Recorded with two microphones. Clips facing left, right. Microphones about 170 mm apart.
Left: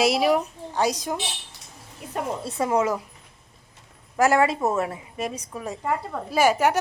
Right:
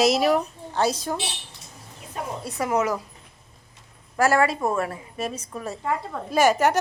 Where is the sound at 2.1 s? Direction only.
65° left (ahead or behind).